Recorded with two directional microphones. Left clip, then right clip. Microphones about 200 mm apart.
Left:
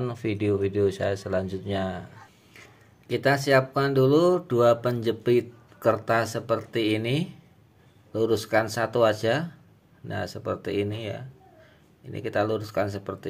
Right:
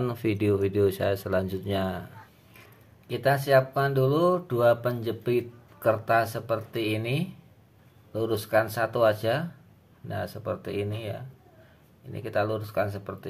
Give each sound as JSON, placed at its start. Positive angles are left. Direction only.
{"t": 0.0, "sound": "speech", "side_deg": -5}
{"t": 3.1, "sound": "speech", "side_deg": 25}